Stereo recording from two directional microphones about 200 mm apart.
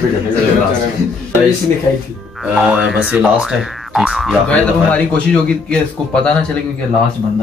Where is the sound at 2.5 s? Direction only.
5° right (ahead or behind).